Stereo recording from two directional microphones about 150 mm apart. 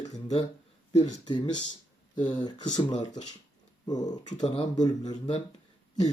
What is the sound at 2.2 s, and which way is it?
Speech, 30° left (ahead or behind).